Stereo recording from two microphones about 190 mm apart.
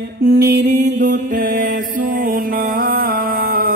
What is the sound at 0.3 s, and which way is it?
Mantra, 60° right (ahead or behind).